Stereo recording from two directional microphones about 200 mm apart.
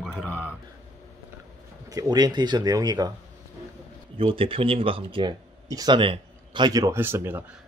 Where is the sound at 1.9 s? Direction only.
20° right (ahead or behind).